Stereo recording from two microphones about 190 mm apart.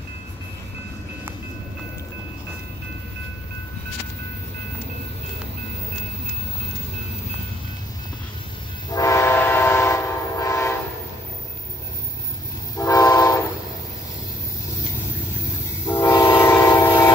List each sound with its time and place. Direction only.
8.9 s train: 15° left (ahead or behind)
12.7 s train: 20° left (ahead or behind)
15.9 s train: 15° left (ahead or behind)